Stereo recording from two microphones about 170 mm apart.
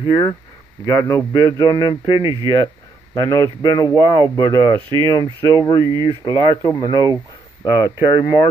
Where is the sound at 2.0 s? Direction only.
20° right (ahead or behind).